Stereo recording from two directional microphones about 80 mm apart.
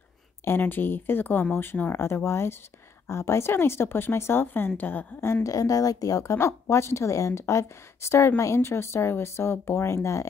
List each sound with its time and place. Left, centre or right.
0.5 s a woman's voice: left
5.2 s a woman's voice: left
6.3 s a woman's voice: left